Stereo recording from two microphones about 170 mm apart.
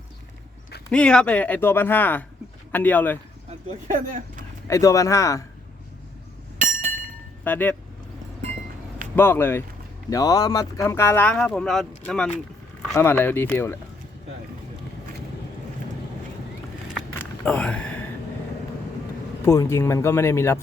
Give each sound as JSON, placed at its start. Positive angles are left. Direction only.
{"t": 0.9, "sound": "speech", "side_deg": 5}
{"t": 3.7, "sound": "speech", "side_deg": -50}
{"t": 4.7, "sound": "speech", "side_deg": 20}
{"t": 6.6, "sound": "chink", "side_deg": -50}
{"t": 7.4, "sound": "speech", "side_deg": 10}
{"t": 9.1, "sound": "speech", "side_deg": 15}
{"t": 17.2, "sound": "a sound", "side_deg": 5}
{"t": 19.5, "sound": "speech", "side_deg": 15}